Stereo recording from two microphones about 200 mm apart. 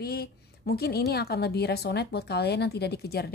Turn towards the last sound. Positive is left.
turn(degrees=55)  # may be behind; listen again after turning